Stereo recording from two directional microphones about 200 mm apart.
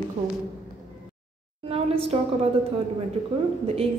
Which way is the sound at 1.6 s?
30° right (ahead or behind).